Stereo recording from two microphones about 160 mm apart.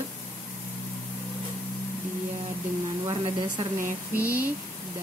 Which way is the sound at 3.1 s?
30° right (ahead or behind).